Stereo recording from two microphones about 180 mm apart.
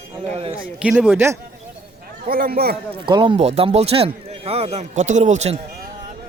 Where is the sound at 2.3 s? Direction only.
55° right (ahead or behind).